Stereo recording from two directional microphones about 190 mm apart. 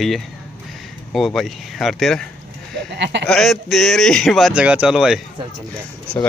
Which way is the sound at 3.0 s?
65° right (ahead or behind).